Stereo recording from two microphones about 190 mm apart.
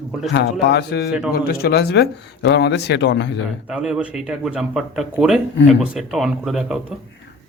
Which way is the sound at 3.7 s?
5° right (ahead or behind).